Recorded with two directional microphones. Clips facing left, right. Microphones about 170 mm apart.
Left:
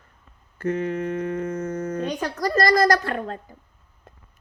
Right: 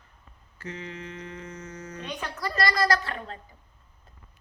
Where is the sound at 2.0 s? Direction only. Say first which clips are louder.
Left 4 dB; 40° left (ahead or behind).